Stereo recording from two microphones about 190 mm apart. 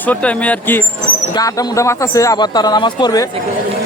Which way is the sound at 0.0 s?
5° left (ahead or behind).